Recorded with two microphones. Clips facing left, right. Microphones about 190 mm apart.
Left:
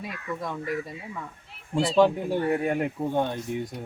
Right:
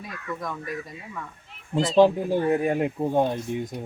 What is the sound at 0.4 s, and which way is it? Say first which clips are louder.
Speech: left 5 dB; 25° left (ahead or behind).